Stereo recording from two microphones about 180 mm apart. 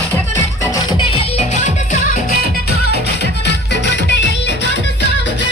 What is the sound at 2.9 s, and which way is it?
Music, 70° left (ahead or behind).